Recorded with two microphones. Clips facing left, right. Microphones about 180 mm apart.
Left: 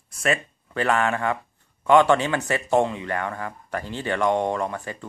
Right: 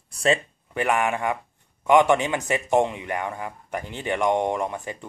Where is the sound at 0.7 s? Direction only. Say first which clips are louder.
Left 1 dB; 15° right (ahead or behind).